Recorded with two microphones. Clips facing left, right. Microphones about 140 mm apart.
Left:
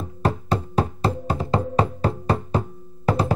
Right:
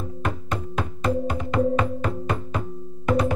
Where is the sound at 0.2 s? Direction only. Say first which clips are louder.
Left 7 dB; 35° left (ahead or behind).